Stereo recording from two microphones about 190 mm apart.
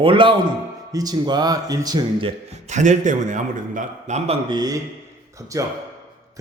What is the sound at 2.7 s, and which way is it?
A man's voice, 40° right (ahead or behind).